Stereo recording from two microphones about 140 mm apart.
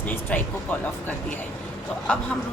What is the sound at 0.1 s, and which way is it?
Speech, 10° left (ahead or behind).